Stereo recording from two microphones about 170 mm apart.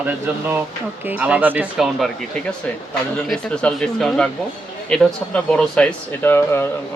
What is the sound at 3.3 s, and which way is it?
Speech, 5° left (ahead or behind).